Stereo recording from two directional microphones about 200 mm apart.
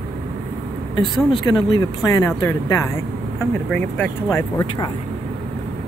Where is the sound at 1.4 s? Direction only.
20° left (ahead or behind).